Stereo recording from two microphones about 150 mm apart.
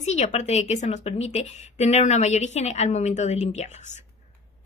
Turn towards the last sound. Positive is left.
turn(degrees=50)  # may be behind; listen again after turning